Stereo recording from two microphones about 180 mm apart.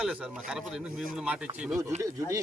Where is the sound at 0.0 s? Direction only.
5° right (ahead or behind).